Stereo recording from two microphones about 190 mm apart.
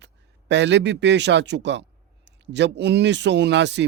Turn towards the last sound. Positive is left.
turn(degrees=-65)  # may be behind; listen again after turning